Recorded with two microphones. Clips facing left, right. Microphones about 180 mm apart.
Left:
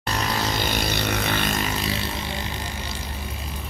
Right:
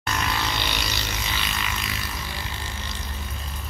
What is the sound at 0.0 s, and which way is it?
Vehicle, 35° left (ahead or behind).